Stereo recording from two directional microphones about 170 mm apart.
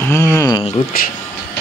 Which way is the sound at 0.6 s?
35° left (ahead or behind).